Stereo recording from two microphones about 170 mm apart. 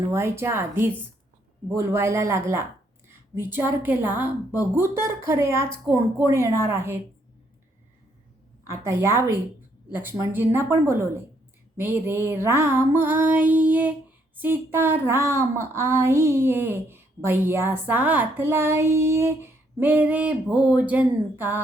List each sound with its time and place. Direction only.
0.1 s speech: 15° right (ahead or behind)
8.6 s speech: 15° right (ahead or behind)